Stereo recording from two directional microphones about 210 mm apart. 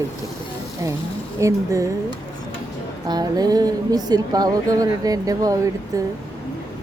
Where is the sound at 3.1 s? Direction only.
20° right (ahead or behind).